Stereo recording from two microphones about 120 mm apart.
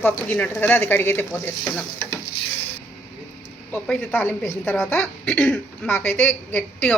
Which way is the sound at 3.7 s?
10° left (ahead or behind).